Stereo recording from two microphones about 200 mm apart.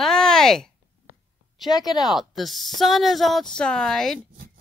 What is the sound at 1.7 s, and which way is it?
Speech, 20° left (ahead or behind).